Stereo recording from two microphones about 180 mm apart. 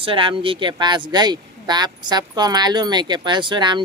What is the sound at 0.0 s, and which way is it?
Speech, 30° right (ahead or behind).